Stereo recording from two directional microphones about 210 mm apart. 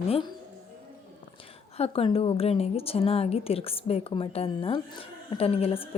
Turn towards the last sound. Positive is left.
turn(degrees=25)  # may be behind; listen again after turning